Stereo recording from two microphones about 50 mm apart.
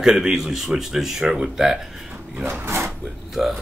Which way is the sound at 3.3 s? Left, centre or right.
Centre.